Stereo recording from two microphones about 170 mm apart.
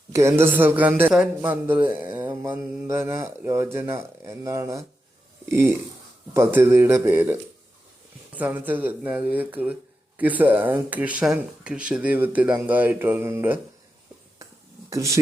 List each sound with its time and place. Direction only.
0.1 s mantra: 15° right (ahead or behind)
5.5 s speech: 15° right (ahead or behind)
6.3 s mantra: 15° right (ahead or behind)
8.4 s mantra: 10° right (ahead or behind)
14.8 s speech: 20° right (ahead or behind)